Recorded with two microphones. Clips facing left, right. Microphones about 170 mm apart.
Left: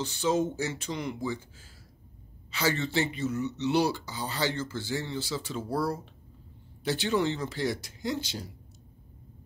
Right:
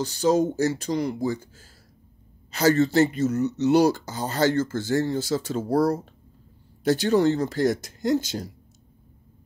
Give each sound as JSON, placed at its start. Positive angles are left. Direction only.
{"t": 0.0, "sound": "speech", "side_deg": -40}